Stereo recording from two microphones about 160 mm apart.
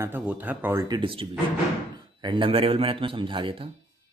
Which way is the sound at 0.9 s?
30° right (ahead or behind).